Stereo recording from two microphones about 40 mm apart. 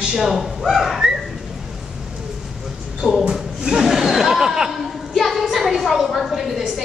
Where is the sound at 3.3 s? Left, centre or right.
Centre.